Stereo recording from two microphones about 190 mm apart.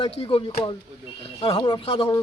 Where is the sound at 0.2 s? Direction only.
30° left (ahead or behind).